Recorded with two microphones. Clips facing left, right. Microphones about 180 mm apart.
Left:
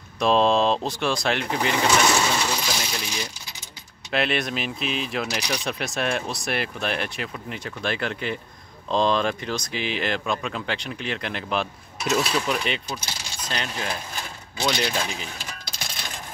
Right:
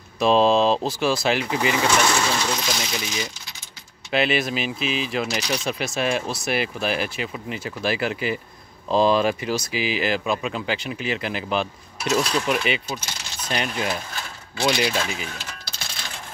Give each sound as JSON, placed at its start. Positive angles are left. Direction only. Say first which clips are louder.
{"t": 0.2, "sound": "speech", "louder": "right 2 dB", "side_deg": 0}
{"t": 4.1, "sound": "speech", "louder": "right 3 dB", "side_deg": 0}
{"t": 15.7, "sound": "coin", "louder": "left 1 dB", "side_deg": 15}